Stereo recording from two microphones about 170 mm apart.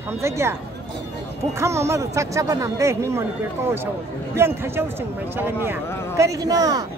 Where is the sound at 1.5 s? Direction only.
15° right (ahead or behind).